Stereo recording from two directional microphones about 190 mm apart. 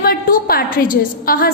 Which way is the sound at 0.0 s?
50° left (ahead or behind).